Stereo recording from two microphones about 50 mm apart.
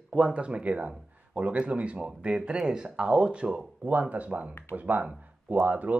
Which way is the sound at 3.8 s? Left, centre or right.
Right.